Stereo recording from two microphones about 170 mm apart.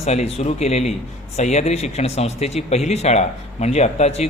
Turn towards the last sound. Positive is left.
turn(degrees=40)  # may be behind; listen again after turning